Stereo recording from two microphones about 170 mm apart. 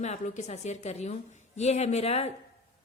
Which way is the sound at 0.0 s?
40° left (ahead or behind).